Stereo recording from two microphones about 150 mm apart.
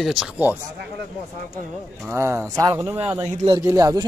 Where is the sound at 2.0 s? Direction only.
15° right (ahead or behind).